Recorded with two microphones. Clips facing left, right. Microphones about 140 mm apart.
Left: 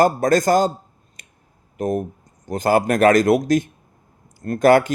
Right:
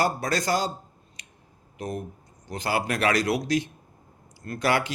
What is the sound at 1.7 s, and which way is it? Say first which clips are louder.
Speech: left 10 dB; 50° left (ahead or behind).